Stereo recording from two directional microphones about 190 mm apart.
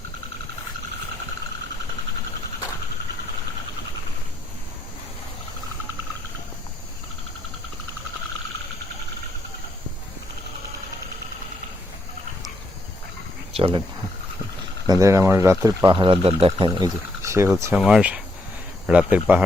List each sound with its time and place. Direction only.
13.5 s speech: 30° right (ahead or behind)
14.8 s speech: 15° right (ahead or behind)